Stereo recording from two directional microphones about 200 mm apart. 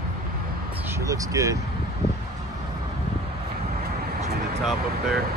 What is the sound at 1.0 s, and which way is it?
Speech, 15° right (ahead or behind).